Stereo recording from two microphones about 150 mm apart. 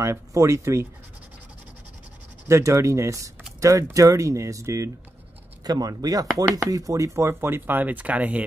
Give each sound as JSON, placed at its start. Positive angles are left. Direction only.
{"t": 0.0, "sound": "speech", "side_deg": -20}
{"t": 2.4, "sound": "speech", "side_deg": -20}